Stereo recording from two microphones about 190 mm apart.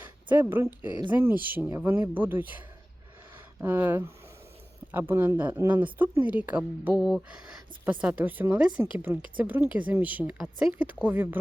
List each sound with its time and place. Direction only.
0.0 s a woman's voice: 10° right (ahead or behind)